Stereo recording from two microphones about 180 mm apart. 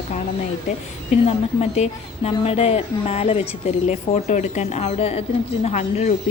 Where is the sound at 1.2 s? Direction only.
40° left (ahead or behind).